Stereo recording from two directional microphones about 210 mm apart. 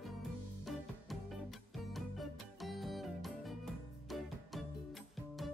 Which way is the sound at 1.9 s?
Centre (ahead or behind).